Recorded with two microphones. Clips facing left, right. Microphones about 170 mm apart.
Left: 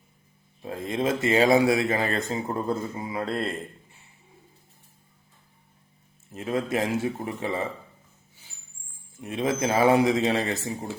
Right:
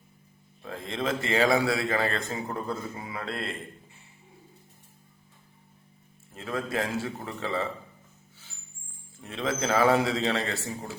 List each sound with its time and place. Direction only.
0.6 s a man's voice: 20° left (ahead or behind)
2.5 s a man's voice: 35° left (ahead or behind)
6.3 s a man's voice: 20° left (ahead or behind)
9.2 s a man's voice: 20° left (ahead or behind)